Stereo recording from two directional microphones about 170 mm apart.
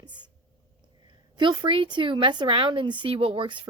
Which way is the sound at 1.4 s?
30° right (ahead or behind).